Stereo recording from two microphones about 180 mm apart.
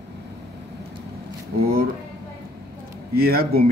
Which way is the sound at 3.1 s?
55° right (ahead or behind).